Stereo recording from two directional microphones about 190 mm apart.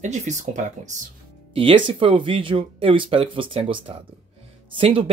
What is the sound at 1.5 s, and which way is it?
Speech, 25° right (ahead or behind).